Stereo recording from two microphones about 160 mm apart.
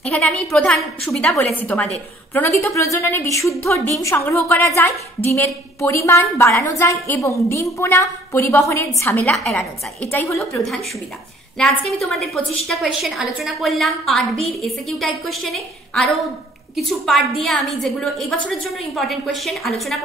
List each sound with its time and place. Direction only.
0.0 s a woman's voice: 5° left (ahead or behind)
11.5 s a woman's voice: centre (ahead or behind)